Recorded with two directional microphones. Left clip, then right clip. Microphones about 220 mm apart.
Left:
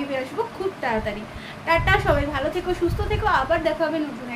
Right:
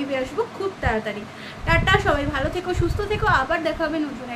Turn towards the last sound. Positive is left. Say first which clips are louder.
# left 1 dB
turn(degrees=-15)  # may be behind; listen again after turning